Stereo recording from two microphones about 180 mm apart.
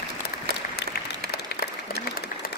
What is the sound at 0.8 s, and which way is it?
Applause, 75° left (ahead or behind).